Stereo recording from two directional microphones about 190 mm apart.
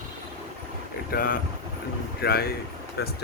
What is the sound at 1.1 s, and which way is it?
Speech, 50° left (ahead or behind).